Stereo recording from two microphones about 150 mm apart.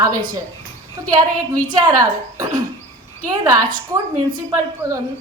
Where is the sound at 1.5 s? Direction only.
20° right (ahead or behind).